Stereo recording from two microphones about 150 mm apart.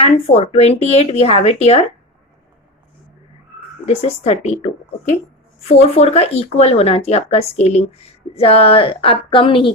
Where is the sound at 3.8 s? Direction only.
45° left (ahead or behind).